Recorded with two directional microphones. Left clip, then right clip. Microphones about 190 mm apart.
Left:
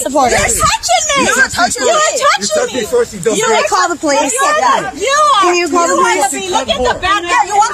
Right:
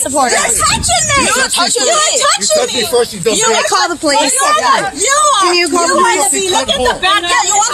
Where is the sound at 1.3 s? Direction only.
5° right (ahead or behind).